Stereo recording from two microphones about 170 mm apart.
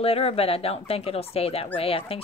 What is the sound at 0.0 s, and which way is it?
Speech, 35° left (ahead or behind).